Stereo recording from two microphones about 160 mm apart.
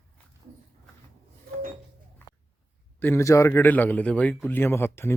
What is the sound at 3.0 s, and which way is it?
A man's voice, 15° left (ahead or behind).